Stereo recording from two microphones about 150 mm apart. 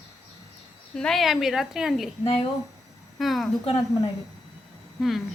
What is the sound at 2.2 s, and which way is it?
Speech, 40° left (ahead or behind).